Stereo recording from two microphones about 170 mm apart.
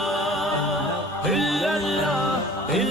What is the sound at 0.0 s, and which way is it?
Music, centre (ahead or behind).